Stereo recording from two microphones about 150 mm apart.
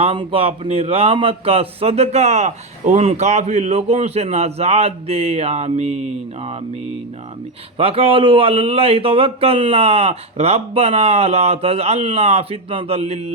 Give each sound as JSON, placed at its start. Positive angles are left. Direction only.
{"t": 0.0, "sound": "a man's voice", "side_deg": -35}
{"t": 7.8, "sound": "speech", "side_deg": -40}